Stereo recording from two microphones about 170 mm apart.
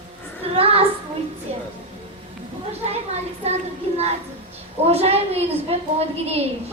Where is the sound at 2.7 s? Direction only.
35° right (ahead or behind).